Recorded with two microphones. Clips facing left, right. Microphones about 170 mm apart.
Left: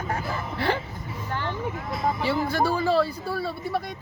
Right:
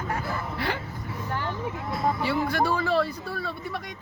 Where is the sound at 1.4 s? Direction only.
5° right (ahead or behind).